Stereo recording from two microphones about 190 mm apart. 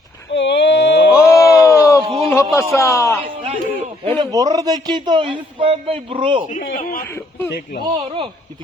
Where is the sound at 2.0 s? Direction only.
30° right (ahead or behind).